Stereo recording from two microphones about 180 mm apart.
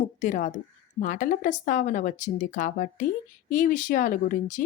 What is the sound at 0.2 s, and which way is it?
Speech, 45° left (ahead or behind).